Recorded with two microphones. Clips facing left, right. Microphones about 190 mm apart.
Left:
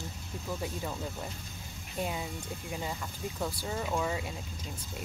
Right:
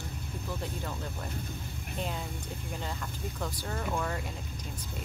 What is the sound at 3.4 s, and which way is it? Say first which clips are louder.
Speech: left 1 dB; 10° left (ahead or behind).